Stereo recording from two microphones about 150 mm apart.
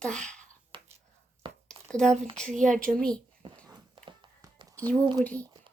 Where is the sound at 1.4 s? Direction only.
35° right (ahead or behind).